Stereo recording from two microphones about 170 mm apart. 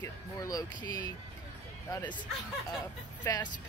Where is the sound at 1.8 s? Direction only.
15° left (ahead or behind).